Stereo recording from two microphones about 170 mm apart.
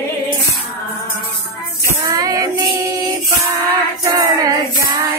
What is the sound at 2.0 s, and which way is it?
Music, 20° right (ahead or behind).